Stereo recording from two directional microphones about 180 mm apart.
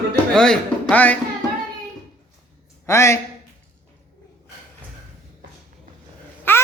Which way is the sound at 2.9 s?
15° left (ahead or behind).